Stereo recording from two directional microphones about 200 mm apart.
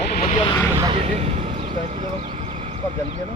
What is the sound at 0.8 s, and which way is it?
Speech, 25° right (ahead or behind).